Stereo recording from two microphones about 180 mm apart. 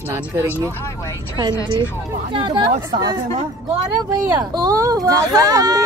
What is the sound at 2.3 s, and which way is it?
Speech, 25° right (ahead or behind).